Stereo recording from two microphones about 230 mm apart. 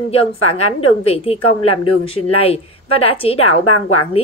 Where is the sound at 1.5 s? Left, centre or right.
Left.